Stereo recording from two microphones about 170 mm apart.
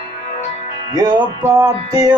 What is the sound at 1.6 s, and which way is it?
Music, 20° right (ahead or behind).